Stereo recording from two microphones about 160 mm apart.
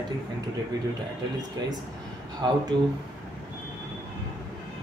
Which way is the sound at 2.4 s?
25° right (ahead or behind).